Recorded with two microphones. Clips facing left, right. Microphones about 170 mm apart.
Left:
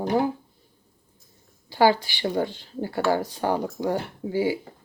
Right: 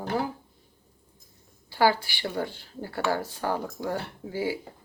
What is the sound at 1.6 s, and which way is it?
Speech, 20° left (ahead or behind).